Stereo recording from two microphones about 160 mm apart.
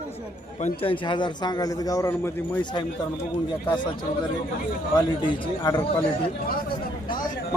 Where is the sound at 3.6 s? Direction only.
30° left (ahead or behind).